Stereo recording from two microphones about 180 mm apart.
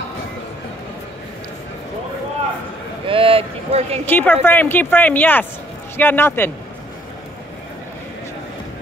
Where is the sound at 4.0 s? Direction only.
10° left (ahead or behind).